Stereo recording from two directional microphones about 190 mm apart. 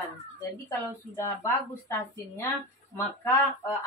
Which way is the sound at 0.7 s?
15° left (ahead or behind).